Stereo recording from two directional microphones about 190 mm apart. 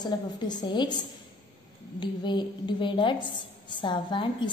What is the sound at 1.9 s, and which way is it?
A woman's voice, 25° left (ahead or behind).